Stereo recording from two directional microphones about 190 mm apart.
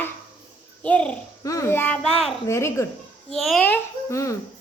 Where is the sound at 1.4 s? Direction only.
15° left (ahead or behind).